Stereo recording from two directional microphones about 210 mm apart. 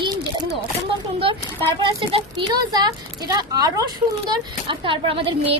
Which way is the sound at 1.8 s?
20° right (ahead or behind).